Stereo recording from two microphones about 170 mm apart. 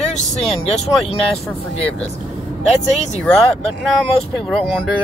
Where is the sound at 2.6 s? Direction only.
40° left (ahead or behind).